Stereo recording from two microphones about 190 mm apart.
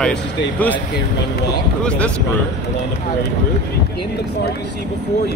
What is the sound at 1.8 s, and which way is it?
Speech, 5° left (ahead or behind).